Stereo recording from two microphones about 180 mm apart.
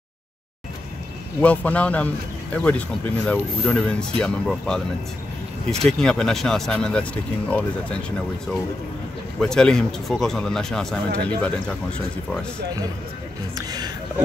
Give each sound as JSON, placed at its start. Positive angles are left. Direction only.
{"t": 1.4, "sound": "speech", "side_deg": 10}
{"t": 5.9, "sound": "speech", "side_deg": 5}
{"t": 9.4, "sound": "speech", "side_deg": 5}
{"t": 13.6, "sound": "speech", "side_deg": -20}